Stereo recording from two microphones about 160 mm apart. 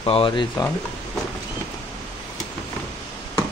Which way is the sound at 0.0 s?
35° left (ahead or behind).